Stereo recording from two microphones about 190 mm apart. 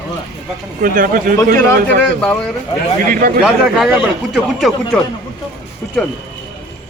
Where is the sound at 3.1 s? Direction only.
50° right (ahead or behind).